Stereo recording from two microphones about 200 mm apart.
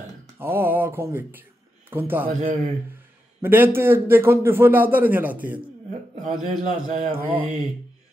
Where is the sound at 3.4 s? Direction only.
10° right (ahead or behind).